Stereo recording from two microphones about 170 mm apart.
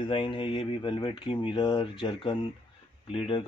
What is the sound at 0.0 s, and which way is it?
Speech, 30° left (ahead or behind).